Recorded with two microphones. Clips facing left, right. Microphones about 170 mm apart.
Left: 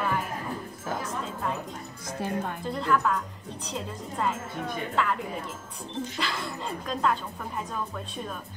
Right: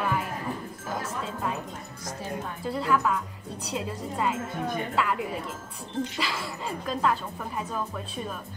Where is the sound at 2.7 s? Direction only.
5° right (ahead or behind).